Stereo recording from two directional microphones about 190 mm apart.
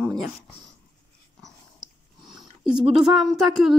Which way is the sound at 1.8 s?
20° right (ahead or behind).